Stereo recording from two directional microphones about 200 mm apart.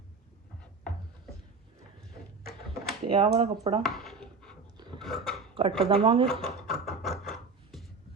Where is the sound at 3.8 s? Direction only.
Centre (ahead or behind).